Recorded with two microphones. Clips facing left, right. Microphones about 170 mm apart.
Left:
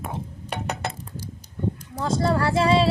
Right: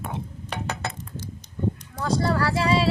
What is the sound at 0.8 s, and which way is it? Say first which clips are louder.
Chink: left 1 dB; 30° left (ahead or behind).